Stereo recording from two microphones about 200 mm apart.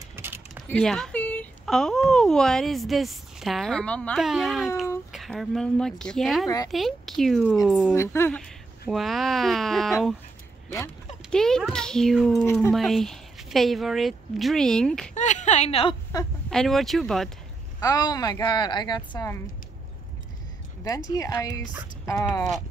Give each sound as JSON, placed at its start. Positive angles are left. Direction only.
{"t": 0.1, "sound": "a sound", "side_deg": -10}
{"t": 0.7, "sound": "speech", "side_deg": 5}
{"t": 7.9, "sound": "speech", "side_deg": 15}
{"t": 11.2, "sound": "a child's voice", "side_deg": 0}
{"t": 12.4, "sound": "speech", "side_deg": 10}
{"t": 12.7, "sound": "speech", "side_deg": 0}
{"t": 15.1, "sound": "a woman's voice", "side_deg": 35}
{"t": 16.4, "sound": "speech", "side_deg": 0}
{"t": 17.7, "sound": "speech", "side_deg": 20}
{"t": 20.8, "sound": "speech", "side_deg": 15}